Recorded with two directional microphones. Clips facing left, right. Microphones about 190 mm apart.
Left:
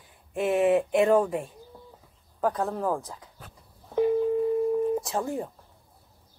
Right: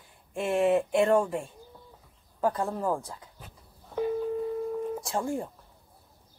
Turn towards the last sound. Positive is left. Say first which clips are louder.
# left 1 dB
turn(degrees=0)  # may be behind; listen again after turning